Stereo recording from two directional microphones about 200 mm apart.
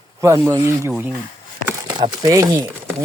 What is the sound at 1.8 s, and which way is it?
Speech, 20° right (ahead or behind).